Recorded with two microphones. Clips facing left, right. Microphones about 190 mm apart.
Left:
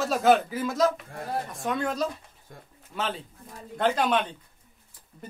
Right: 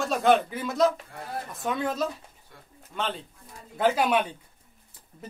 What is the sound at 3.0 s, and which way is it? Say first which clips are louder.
A man's voice: even; centre (ahead or behind).